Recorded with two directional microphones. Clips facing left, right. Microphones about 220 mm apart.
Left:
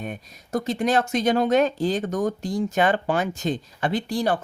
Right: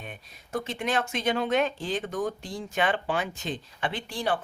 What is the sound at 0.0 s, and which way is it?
Speech, 45° left (ahead or behind).